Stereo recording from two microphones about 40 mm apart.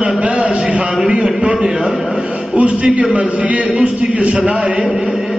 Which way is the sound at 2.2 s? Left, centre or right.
Right.